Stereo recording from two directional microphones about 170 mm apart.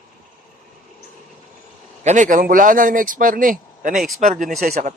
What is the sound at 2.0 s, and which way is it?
A man's voice, 45° right (ahead or behind).